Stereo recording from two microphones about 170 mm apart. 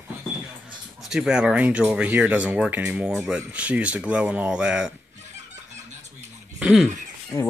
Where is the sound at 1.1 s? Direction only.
5° right (ahead or behind).